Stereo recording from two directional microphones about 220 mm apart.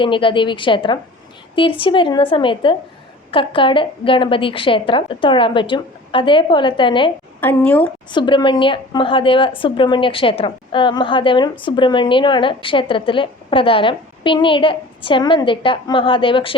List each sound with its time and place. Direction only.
0.0 s a woman's voice: 20° left (ahead or behind)
7.4 s a woman's voice: 5° left (ahead or behind)
8.1 s a woman's voice: 20° left (ahead or behind)